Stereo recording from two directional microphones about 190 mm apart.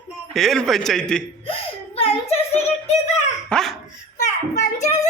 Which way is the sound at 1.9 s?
30° left (ahead or behind).